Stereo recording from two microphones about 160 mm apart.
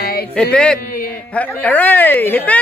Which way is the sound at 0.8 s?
65° left (ahead or behind).